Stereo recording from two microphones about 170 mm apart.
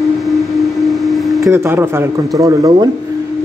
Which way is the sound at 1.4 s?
15° right (ahead or behind).